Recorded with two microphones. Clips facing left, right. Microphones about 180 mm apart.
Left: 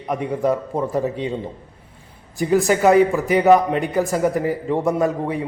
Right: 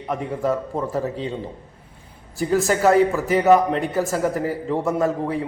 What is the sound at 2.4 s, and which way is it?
A man's voice, 15° left (ahead or behind).